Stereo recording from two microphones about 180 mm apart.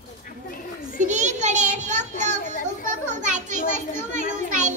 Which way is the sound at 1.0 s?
40° right (ahead or behind).